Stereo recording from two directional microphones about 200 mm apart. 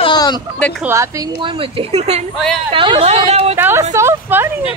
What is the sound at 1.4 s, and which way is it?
Speech, 25° right (ahead or behind).